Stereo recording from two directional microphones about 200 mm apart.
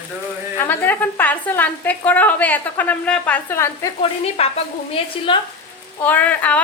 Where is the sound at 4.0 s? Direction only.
30° left (ahead or behind).